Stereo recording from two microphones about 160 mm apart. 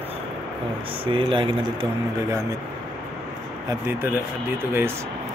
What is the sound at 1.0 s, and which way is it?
Speech, 35° right (ahead or behind).